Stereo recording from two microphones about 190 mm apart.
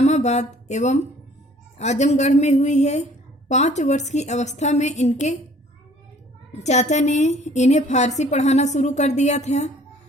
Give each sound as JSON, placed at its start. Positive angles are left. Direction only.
{"t": 0.0, "sound": "a woman's voice", "side_deg": 35}
{"t": 6.5, "sound": "a woman's voice", "side_deg": 35}